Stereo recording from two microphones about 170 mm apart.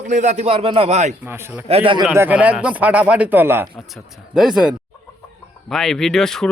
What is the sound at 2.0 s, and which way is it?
Speech, 10° right (ahead or behind).